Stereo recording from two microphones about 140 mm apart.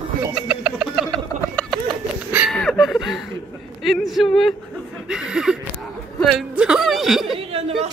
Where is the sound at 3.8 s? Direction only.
Centre (ahead or behind).